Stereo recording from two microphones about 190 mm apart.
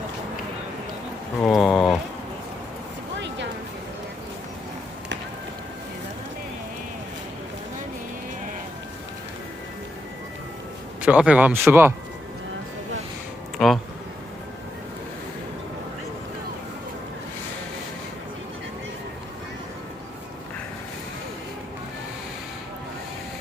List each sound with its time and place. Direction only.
1.4 s speech: centre (ahead or behind)
3.2 s a sound: 70° right (ahead or behind)
11.0 s speech: 5° right (ahead or behind)
13.6 s speech: centre (ahead or behind)